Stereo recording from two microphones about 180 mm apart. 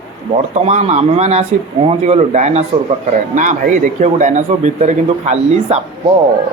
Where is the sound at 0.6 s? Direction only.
40° right (ahead or behind).